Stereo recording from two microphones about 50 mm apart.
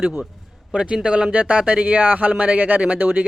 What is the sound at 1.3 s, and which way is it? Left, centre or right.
Speech, right.